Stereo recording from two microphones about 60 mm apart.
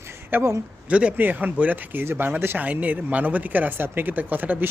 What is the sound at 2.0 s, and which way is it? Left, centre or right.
Speech, right.